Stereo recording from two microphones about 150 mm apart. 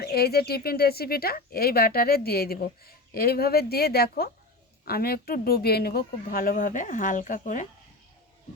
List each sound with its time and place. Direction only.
0.0 s speech: 90° left; by 7.7 s 60° left (ahead or behind)